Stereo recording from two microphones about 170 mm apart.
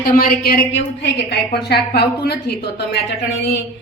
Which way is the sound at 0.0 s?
55° left (ahead or behind).